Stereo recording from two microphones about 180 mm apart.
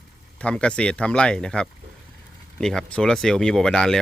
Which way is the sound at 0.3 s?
5° left (ahead or behind).